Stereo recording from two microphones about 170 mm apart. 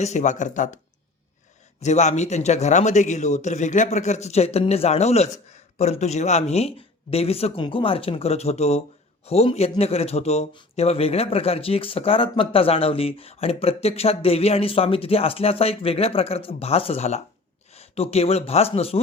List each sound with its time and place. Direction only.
0.0 s speech: 45° left (ahead or behind)
1.8 s speech: 45° left (ahead or behind)